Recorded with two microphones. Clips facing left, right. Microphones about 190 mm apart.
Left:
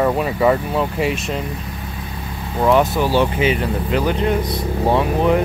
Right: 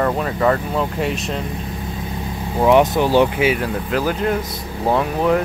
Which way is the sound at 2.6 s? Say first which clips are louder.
Right 2 dB; 15° right (ahead or behind).